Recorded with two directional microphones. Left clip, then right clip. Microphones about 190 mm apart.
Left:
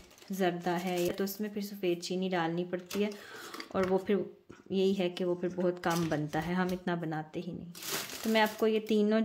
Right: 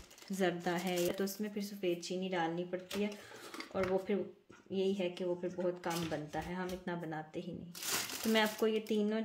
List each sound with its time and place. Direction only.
0.4 s speech: 15° left (ahead or behind)
8.3 s speech: 15° left (ahead or behind)
8.8 s speech: 30° left (ahead or behind)